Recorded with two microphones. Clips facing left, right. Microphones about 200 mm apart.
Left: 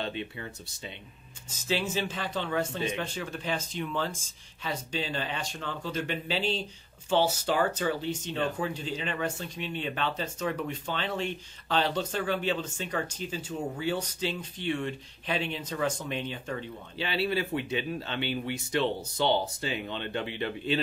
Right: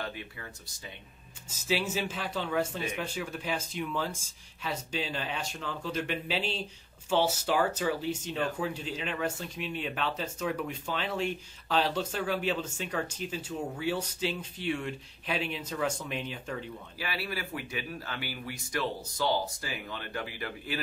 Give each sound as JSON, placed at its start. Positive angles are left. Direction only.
{"t": 0.0, "sound": "speech", "side_deg": 25}
{"t": 1.5, "sound": "speech", "side_deg": -5}
{"t": 17.0, "sound": "speech", "side_deg": 25}